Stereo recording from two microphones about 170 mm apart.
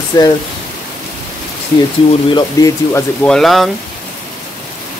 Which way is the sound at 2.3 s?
20° left (ahead or behind).